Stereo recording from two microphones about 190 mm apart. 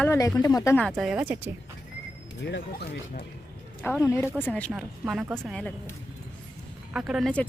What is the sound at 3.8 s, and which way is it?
Speech, 10° left (ahead or behind).